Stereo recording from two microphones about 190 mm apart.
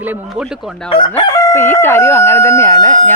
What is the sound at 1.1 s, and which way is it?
Speech, 10° left (ahead or behind).